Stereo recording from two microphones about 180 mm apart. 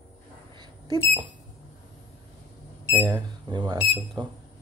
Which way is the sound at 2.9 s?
25° right (ahead or behind).